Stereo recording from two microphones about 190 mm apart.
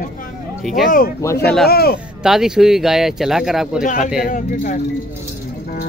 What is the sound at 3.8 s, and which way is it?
Speech, 45° left (ahead or behind).